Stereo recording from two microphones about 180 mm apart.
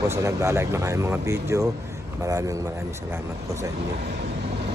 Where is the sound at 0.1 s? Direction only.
15° right (ahead or behind).